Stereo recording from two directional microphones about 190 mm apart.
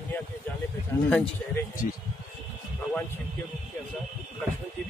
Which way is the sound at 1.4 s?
10° left (ahead or behind).